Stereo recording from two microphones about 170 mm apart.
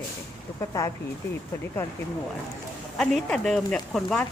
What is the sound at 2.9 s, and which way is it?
A woman's voice, 5° left (ahead or behind).